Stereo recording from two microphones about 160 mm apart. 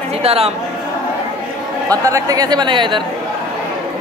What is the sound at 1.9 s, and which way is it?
Speech, 20° right (ahead or behind).